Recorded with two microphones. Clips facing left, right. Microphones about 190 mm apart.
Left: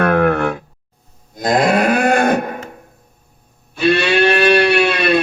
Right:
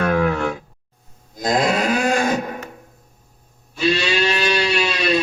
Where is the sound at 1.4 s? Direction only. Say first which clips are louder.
Left 4 dB; 60° left (ahead or behind).